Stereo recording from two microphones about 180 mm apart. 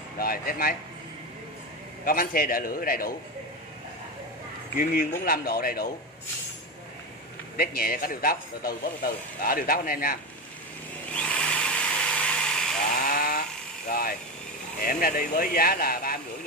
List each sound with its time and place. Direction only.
0.2 s speech: 55° left (ahead or behind)
2.0 s speech: 55° left (ahead or behind)
4.7 s speech: 55° left (ahead or behind)
7.5 s speech: 55° left (ahead or behind)
11.1 s drill: 5° left (ahead or behind)
12.9 s chainsaw: 50° left (ahead or behind)
13.8 s speech: 55° left (ahead or behind)